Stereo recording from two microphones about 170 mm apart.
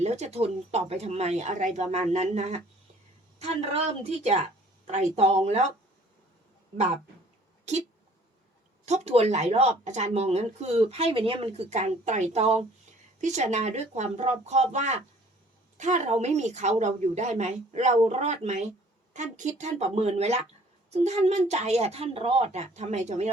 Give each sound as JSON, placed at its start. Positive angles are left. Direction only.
{"t": 0.0, "sound": "speech", "side_deg": -40}
{"t": 7.6, "sound": "speech", "side_deg": -40}
{"t": 8.9, "sound": "a woman's voice", "side_deg": -40}